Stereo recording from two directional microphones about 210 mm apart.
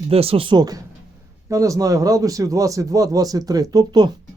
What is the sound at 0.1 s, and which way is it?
A man's voice, 25° right (ahead or behind).